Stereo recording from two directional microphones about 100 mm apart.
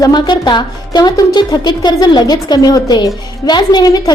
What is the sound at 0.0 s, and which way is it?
A woman's voice, 50° left (ahead or behind).